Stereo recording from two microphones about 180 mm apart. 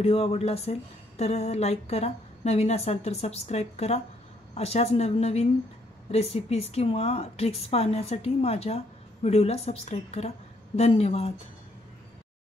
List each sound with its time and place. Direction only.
0.0 s a woman's voice: 35° left (ahead or behind)